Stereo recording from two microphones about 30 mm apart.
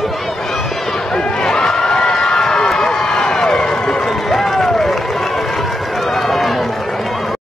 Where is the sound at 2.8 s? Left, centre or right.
Left.